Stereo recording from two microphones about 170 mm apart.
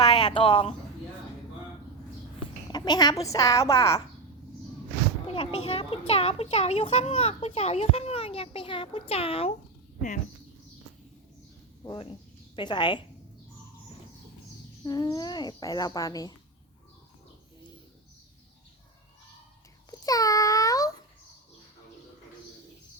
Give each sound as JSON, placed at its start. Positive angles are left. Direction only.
{"t": 0.0, "sound": "speech", "side_deg": 30}
{"t": 2.7, "sound": "speech", "side_deg": 25}
{"t": 5.3, "sound": "a child's voice", "side_deg": 35}
{"t": 11.8, "sound": "speech", "side_deg": 30}
{"t": 14.8, "sound": "speech", "side_deg": 25}
{"t": 19.9, "sound": "babbling", "side_deg": 20}